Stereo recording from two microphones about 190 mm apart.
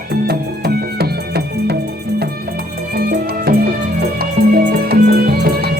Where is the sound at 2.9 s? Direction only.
55° right (ahead or behind).